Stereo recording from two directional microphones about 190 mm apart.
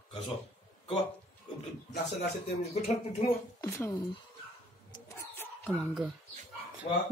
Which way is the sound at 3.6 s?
15° left (ahead or behind).